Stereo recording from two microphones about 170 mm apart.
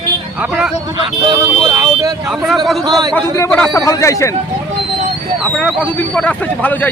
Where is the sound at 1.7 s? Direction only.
20° right (ahead or behind).